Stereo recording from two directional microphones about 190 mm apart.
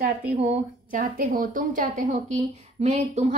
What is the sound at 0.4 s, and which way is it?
A woman's voice, 40° right (ahead or behind).